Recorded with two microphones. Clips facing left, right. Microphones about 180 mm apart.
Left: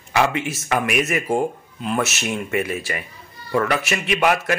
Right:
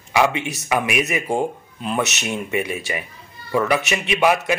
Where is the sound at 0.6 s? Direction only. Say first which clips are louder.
Even; 10° right (ahead or behind).